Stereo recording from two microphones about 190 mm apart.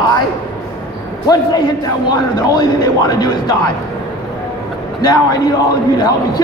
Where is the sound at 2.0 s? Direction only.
20° left (ahead or behind).